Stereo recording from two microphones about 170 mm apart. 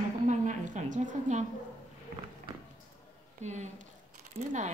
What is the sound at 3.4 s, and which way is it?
Speech, 45° right (ahead or behind).